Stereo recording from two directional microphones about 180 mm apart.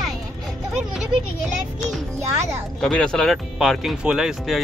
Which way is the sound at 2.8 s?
5° left (ahead or behind).